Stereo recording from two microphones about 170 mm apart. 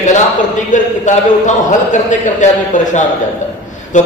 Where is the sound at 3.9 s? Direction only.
45° left (ahead or behind).